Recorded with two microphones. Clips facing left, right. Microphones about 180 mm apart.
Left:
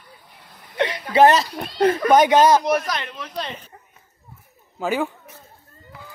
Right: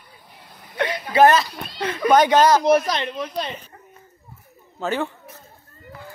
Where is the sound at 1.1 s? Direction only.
25° left (ahead or behind).